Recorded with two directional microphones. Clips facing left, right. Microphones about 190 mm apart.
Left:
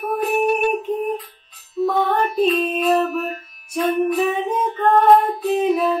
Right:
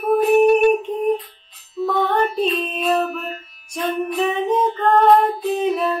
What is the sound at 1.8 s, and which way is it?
Music, 10° left (ahead or behind).